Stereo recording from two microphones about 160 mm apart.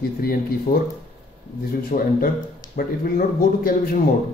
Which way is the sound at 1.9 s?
65° left (ahead or behind).